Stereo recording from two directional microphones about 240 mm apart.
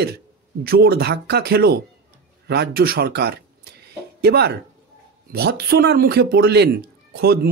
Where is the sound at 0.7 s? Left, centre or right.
Right.